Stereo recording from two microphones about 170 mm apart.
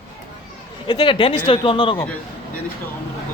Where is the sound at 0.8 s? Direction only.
30° left (ahead or behind).